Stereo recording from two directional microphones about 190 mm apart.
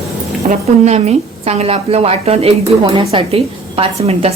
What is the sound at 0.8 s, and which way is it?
A woman's voice, 35° right (ahead or behind).